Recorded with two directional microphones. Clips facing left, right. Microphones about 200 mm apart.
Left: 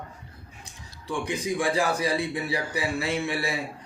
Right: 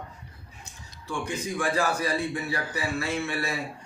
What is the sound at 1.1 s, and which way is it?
Speech, 15° left (ahead or behind).